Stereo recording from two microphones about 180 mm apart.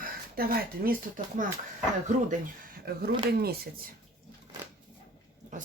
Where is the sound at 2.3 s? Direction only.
50° right (ahead or behind).